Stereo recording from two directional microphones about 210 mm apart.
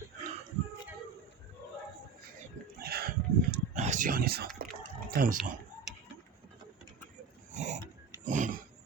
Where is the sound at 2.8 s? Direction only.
45° right (ahead or behind).